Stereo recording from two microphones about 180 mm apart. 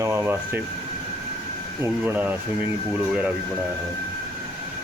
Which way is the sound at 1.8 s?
10° right (ahead or behind).